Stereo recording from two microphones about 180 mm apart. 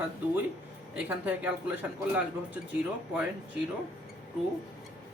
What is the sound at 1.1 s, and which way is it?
Speech, 10° right (ahead or behind).